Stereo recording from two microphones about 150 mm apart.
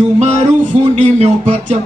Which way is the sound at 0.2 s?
50° right (ahead or behind).